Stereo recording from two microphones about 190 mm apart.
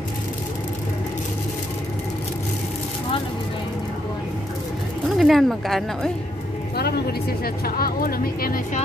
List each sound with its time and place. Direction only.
5.1 s speech: centre (ahead or behind)
6.8 s speech: 55° left (ahead or behind)